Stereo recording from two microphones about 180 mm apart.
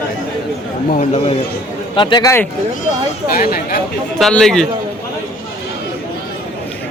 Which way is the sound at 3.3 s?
55° left (ahead or behind).